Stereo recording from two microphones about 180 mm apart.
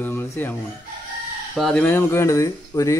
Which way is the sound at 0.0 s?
10° left (ahead or behind).